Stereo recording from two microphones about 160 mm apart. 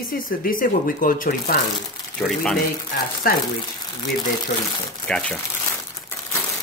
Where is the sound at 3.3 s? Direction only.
65° left (ahead or behind).